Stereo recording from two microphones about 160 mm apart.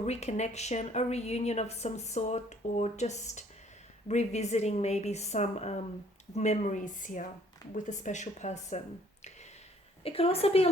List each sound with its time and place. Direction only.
0.0 s a woman's voice: 45° left (ahead or behind)
10.0 s a woman's voice: 35° left (ahead or behind)